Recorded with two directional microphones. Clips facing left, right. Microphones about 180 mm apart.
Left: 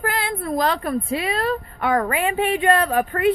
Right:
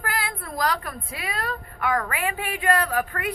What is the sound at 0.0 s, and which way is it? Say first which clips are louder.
A woman's voice: left 6 dB; 25° left (ahead or behind).